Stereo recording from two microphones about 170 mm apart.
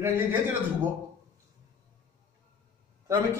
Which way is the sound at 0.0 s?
15° right (ahead or behind).